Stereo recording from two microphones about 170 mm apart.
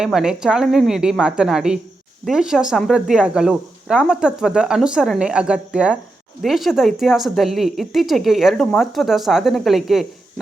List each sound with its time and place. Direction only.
0.0 s a woman's voice: 5° right (ahead or behind)